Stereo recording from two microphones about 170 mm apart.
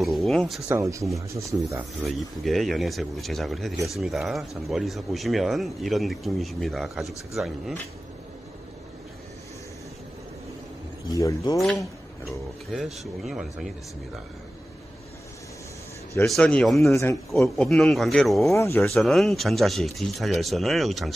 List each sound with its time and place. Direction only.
0.0 s speech: centre (ahead or behind)
0.7 s speech: 15° right (ahead or behind)
2.0 s speech: centre (ahead or behind)
11.1 s speech: 20° left (ahead or behind)
12.7 s speech: centre (ahead or behind)
16.3 s speech: 5° left (ahead or behind)
16.9 s a man's voice: 20° left (ahead or behind)
17.3 s speech: centre (ahead or behind)
18.5 s a man's voice: 15° left (ahead or behind)
18.9 s speech: centre (ahead or behind)